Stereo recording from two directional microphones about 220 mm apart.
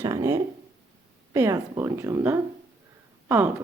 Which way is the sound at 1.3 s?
10° right (ahead or behind).